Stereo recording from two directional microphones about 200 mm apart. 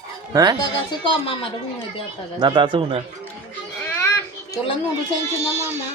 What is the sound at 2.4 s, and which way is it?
Speech, 25° right (ahead or behind).